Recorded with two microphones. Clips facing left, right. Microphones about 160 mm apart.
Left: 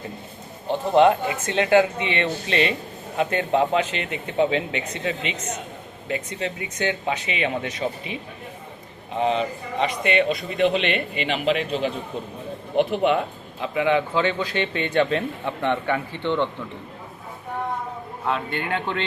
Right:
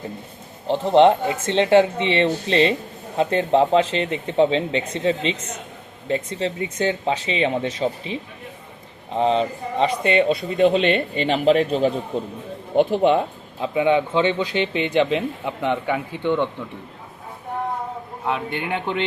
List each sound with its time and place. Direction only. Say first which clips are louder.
0.7 s a man's voice: right 3 dB; 30° right (ahead or behind)
12.7 s speech: right 3 dB; 30° right (ahead or behind); by 16.5 s 10° right (ahead or behind)
18.3 s speech: right 1 dB; 15° right (ahead or behind)